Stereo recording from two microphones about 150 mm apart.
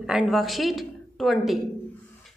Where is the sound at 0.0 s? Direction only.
Centre (ahead or behind).